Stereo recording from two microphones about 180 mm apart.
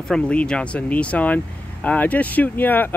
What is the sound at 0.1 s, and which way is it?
Speech, 5° left (ahead or behind).